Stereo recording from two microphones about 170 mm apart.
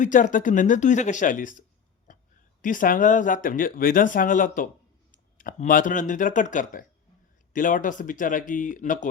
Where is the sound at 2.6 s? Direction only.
50° left (ahead or behind).